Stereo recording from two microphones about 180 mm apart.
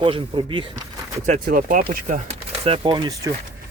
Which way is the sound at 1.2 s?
45° right (ahead or behind).